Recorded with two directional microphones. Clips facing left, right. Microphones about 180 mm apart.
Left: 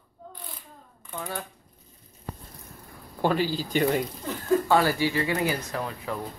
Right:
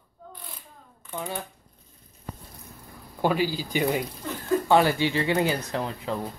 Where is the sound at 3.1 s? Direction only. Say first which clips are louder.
Even; 10° right (ahead or behind).